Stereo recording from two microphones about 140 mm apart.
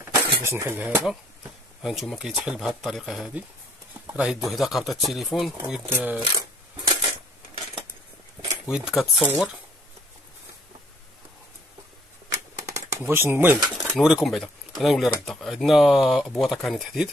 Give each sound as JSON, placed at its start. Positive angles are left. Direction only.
{"t": 0.1, "sound": "speech", "side_deg": -20}
{"t": 1.8, "sound": "speech", "side_deg": 0}
{"t": 5.6, "sound": "speech", "side_deg": -15}
{"t": 8.6, "sound": "speech", "side_deg": -5}
{"t": 12.6, "sound": "a sound", "side_deg": -20}
{"t": 13.0, "sound": "speech", "side_deg": -15}
{"t": 13.7, "sound": "speech", "side_deg": -5}